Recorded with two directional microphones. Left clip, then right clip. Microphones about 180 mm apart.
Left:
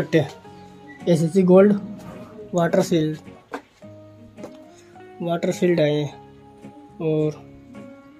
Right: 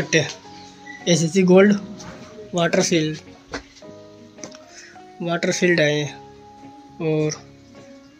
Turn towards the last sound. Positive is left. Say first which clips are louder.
# even
turn(degrees=5)  # may be behind; listen again after turning